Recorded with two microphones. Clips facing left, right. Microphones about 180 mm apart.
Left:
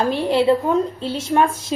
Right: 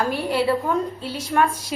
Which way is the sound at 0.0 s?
25° left (ahead or behind).